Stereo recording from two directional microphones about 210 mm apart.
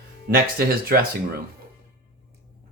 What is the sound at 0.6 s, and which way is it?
Speech, 45° right (ahead or behind).